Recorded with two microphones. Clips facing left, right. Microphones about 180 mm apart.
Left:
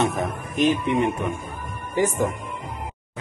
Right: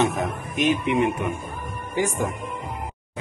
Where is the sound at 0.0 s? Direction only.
Centre (ahead or behind).